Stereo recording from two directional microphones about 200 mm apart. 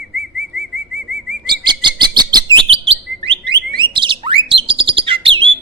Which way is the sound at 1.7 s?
20° right (ahead or behind).